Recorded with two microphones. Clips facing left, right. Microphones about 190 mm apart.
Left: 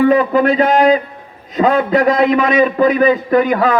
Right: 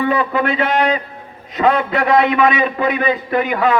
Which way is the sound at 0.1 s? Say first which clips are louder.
Left 6 dB; 40° left (ahead or behind).